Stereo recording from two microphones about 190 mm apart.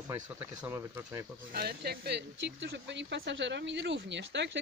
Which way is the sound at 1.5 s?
55° right (ahead or behind).